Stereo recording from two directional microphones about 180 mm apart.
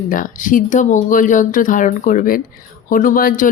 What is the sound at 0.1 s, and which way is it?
Speech, 50° left (ahead or behind).